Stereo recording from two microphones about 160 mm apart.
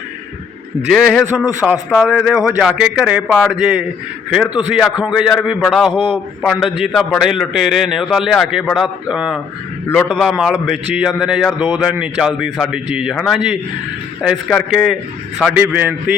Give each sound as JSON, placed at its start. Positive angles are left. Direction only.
{"t": 0.9, "sound": "a man's voice", "side_deg": 0}
{"t": 5.9, "sound": "a man's voice", "side_deg": 30}
{"t": 6.4, "sound": "a man's voice", "side_deg": 0}
{"t": 9.8, "sound": "a man's voice", "side_deg": 10}
{"t": 10.2, "sound": "a man's voice", "side_deg": -5}
{"t": 15.6, "sound": "a man's voice", "side_deg": -10}